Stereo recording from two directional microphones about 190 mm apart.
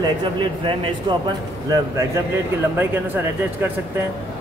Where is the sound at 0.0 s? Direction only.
25° right (ahead or behind).